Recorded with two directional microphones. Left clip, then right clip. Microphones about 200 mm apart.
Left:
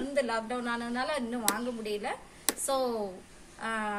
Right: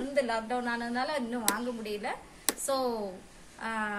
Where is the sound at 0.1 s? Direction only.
10° left (ahead or behind).